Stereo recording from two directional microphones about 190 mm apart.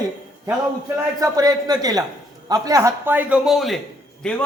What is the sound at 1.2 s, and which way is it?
A man's voice, 20° right (ahead or behind).